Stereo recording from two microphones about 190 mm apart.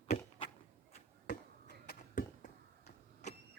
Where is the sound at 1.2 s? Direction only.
45° left (ahead or behind).